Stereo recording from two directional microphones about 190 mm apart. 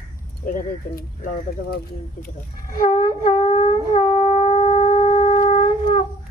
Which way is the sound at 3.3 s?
30° left (ahead or behind).